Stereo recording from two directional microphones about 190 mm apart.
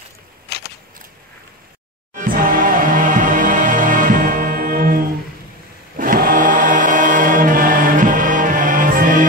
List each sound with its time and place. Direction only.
0.5 s a sound: 60° left (ahead or behind)
2.1 s music: 45° right (ahead or behind)
5.9 s choir: 45° right (ahead or behind)